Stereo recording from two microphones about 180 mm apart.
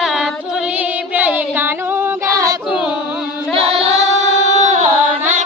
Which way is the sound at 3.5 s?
35° right (ahead or behind).